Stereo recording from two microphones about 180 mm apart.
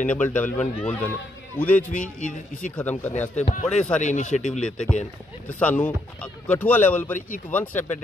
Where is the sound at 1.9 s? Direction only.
45° left (ahead or behind).